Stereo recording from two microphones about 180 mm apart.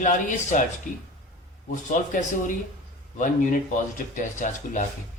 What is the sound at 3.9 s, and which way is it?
Speech, 45° left (ahead or behind).